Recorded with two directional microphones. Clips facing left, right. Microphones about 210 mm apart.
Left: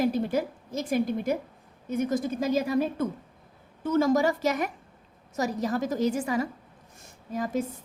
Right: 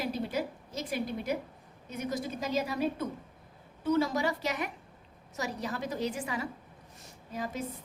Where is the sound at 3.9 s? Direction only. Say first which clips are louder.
Left 5 dB; 45° left (ahead or behind).